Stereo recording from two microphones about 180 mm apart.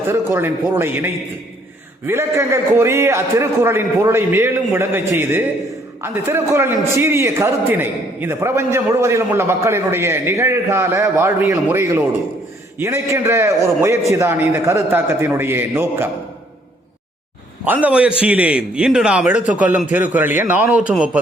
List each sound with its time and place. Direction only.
0.1 s a man's voice: 15° right (ahead or behind)
17.7 s a man's voice: 10° right (ahead or behind)